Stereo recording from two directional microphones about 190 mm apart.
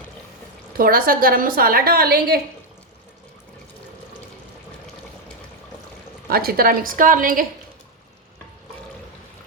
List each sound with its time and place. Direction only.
0.8 s a woman's voice: 50° right (ahead or behind)
6.2 s a woman's voice: 50° right (ahead or behind)